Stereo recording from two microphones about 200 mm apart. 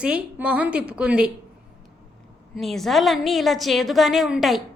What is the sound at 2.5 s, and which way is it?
A woman's voice, centre (ahead or behind).